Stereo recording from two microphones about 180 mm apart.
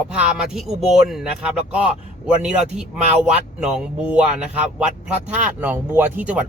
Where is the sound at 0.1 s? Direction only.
5° right (ahead or behind).